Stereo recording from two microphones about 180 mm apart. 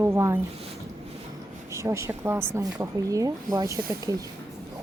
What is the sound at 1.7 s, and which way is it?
Speech, 15° right (ahead or behind).